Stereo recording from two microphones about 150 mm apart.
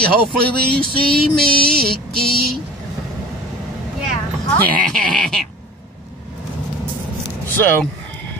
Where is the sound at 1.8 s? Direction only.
90° right.